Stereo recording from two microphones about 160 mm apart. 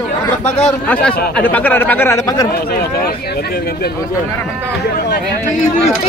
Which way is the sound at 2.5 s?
75° left (ahead or behind).